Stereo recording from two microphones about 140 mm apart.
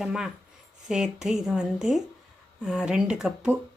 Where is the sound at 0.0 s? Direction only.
5° right (ahead or behind).